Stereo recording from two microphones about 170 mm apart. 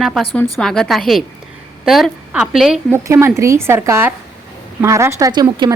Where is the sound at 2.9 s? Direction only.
15° right (ahead or behind).